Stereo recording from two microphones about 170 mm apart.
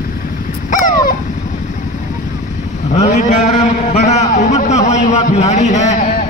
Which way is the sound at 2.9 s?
45° left (ahead or behind).